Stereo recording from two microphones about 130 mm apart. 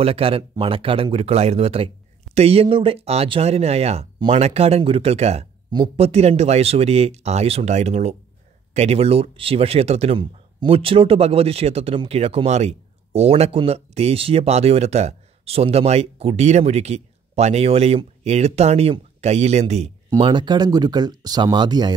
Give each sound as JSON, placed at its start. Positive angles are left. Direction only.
{"t": 0.0, "sound": "speech", "side_deg": -45}
{"t": 20.2, "sound": "speech", "side_deg": -40}